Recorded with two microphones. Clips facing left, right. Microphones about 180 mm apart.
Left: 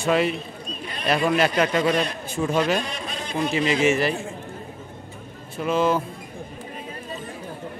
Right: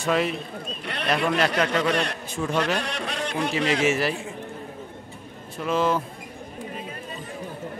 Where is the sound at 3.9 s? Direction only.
5° right (ahead or behind).